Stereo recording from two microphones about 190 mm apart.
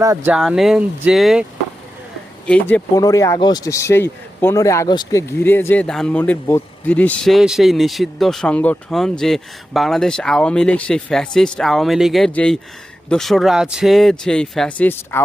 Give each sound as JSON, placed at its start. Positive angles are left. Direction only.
{"t": 0.3, "sound": "speech", "side_deg": -5}
{"t": 2.5, "sound": "speech", "side_deg": 10}